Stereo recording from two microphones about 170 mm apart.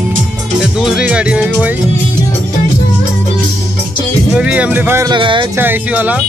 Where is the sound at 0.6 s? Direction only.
5° right (ahead or behind).